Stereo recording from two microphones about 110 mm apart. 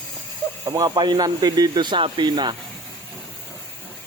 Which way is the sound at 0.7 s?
35° right (ahead or behind).